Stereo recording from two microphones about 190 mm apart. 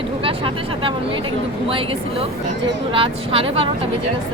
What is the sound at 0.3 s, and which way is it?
Vehicle, 25° right (ahead or behind).